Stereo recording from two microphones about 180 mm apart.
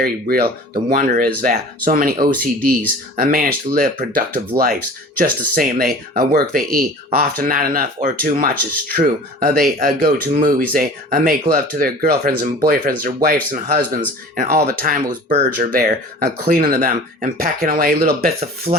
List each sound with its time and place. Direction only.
0.0 s speech: 55° right (ahead or behind)
18.7 s speech: 20° right (ahead or behind)